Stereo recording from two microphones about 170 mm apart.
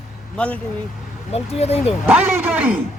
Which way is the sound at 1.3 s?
35° left (ahead or behind).